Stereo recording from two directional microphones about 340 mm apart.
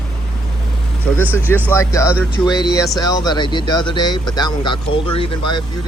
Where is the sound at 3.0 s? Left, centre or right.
Centre.